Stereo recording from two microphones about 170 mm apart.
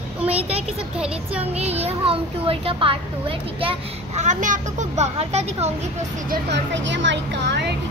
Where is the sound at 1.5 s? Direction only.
35° right (ahead or behind).